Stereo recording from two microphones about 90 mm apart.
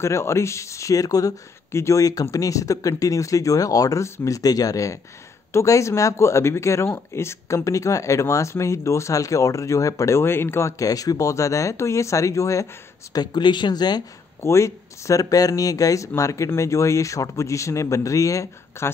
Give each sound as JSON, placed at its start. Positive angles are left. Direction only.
{"t": 0.0, "sound": "speech", "side_deg": 30}
{"t": 13.1, "sound": "speech", "side_deg": 50}
{"t": 14.4, "sound": "speech", "side_deg": 35}